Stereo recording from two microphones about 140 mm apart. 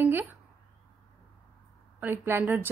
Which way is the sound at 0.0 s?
15° right (ahead or behind).